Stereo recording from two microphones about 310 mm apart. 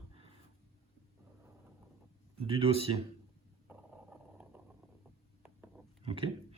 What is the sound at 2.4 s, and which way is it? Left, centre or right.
Speech, centre.